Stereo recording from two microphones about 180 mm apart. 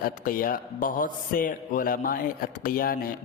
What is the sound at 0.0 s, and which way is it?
A man's voice, 50° left (ahead or behind).